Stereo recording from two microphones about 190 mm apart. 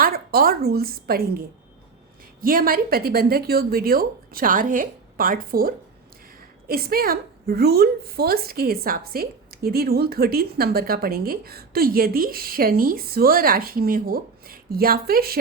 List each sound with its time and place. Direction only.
0.0 s a woman's voice: 50° right (ahead or behind)
2.4 s a woman's voice: 50° right (ahead or behind)